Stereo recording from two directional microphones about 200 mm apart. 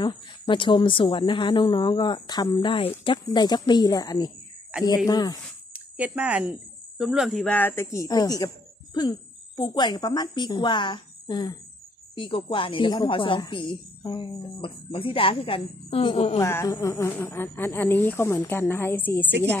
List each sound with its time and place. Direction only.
0.0 s a woman's voice: 25° left (ahead or behind)
5.7 s speech: 5° right (ahead or behind); by 8.5 s 20° left (ahead or behind)
9.6 s a woman's voice: 20° left (ahead or behind)